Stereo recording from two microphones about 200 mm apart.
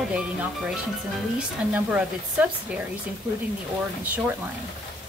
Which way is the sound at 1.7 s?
5° right (ahead or behind).